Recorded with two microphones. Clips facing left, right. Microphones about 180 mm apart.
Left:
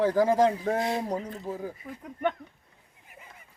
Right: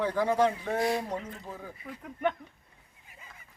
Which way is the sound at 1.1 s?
35° left (ahead or behind).